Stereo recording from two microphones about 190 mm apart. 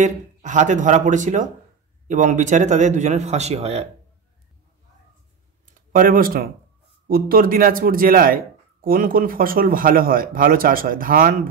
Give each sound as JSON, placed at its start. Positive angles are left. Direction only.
{"t": 0.0, "sound": "a man's voice", "side_deg": -40}
{"t": 5.8, "sound": "speech", "side_deg": -45}